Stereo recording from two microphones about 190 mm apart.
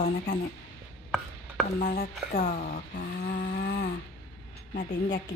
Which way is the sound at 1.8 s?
45° left (ahead or behind).